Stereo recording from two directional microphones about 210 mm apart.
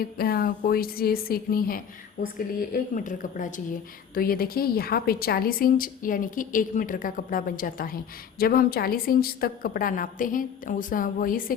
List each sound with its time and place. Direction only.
0.0 s speech: 45° left (ahead or behind)